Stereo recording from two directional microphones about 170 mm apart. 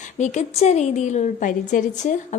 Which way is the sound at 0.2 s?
40° left (ahead or behind).